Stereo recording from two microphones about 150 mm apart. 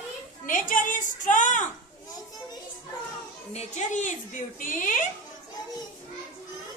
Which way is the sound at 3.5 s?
50° left (ahead or behind).